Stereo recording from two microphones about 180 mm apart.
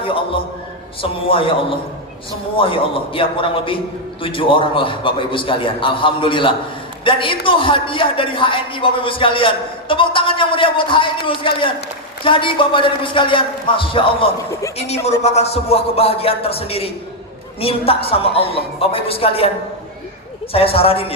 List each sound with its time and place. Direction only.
2.6 s a man's voice: 30° left (ahead or behind)
20.5 s a woman's voice: 30° left (ahead or behind)